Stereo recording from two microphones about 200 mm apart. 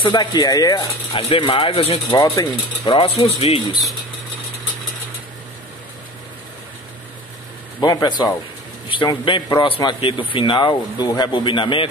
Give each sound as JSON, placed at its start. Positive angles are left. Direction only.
{"t": 0.0, "sound": "a man's voice", "side_deg": 20}
{"t": 1.1, "sound": "a man's voice", "side_deg": 30}
{"t": 7.8, "sound": "a man's voice", "side_deg": 20}